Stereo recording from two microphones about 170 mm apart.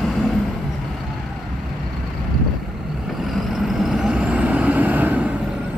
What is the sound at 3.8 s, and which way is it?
Vehicle, 5° right (ahead or behind).